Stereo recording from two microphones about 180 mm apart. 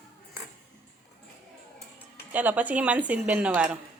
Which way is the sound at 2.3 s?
10° right (ahead or behind).